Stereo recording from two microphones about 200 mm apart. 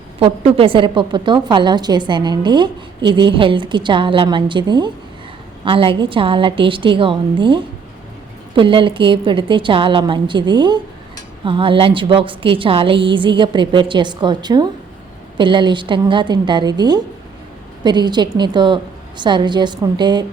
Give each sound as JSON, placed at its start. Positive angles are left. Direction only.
{"t": 0.2, "sound": "a woman's voice", "side_deg": -30}